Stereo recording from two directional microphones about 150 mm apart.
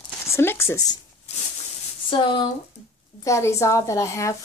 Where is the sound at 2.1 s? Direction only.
30° left (ahead or behind).